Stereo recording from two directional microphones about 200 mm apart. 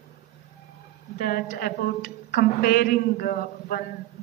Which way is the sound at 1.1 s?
45° left (ahead or behind).